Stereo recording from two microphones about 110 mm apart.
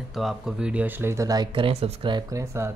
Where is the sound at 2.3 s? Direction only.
25° right (ahead or behind).